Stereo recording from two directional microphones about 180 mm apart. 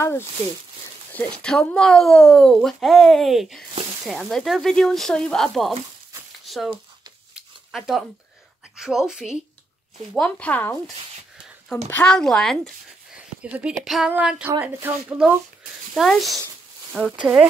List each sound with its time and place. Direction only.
1.1 s speech: 5° left (ahead or behind)
6.4 s a sound: centre (ahead or behind)
7.7 s speech: centre (ahead or behind)
10.1 s speech: 10° left (ahead or behind)
11.9 s speech: 5° left (ahead or behind)